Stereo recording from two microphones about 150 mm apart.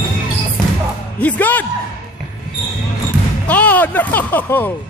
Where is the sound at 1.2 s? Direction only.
10° left (ahead or behind).